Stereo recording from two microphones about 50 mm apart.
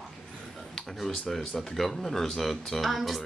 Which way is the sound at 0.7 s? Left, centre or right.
Centre.